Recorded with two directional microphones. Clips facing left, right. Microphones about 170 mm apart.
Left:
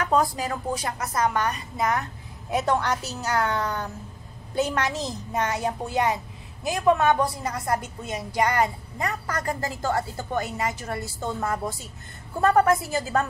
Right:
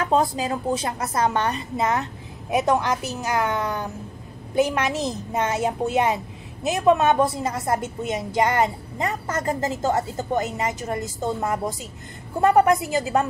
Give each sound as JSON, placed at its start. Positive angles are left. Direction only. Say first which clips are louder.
{"t": 0.0, "sound": "a woman's voice", "louder": "right 2 dB", "side_deg": -25}